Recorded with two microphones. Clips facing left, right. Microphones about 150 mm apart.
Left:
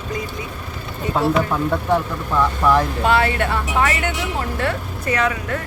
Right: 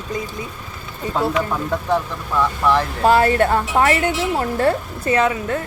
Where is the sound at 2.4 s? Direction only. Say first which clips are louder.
Left 1 dB; 10° left (ahead or behind).